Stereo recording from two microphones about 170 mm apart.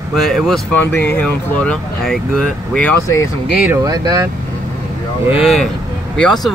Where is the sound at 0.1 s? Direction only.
Centre (ahead or behind).